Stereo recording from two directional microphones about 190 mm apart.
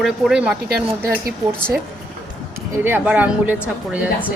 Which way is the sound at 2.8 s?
10° right (ahead or behind).